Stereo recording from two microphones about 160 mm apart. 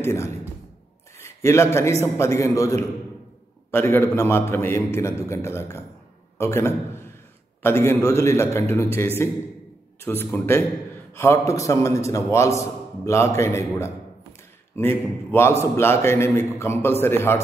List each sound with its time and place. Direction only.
0.0 s a man's voice: 15° left (ahead or behind)